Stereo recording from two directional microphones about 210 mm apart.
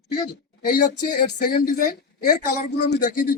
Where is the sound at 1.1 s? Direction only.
45° left (ahead or behind).